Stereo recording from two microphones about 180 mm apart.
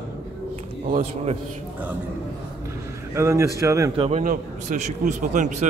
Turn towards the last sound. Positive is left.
turn(degrees=-40)  # may be behind; listen again after turning